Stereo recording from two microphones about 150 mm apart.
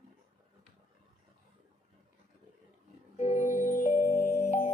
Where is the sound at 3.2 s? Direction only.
55° left (ahead or behind).